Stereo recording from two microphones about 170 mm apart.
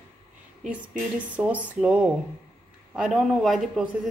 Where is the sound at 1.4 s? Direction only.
5° right (ahead or behind).